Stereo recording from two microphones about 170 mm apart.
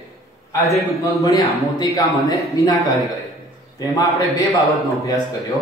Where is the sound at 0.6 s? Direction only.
20° left (ahead or behind).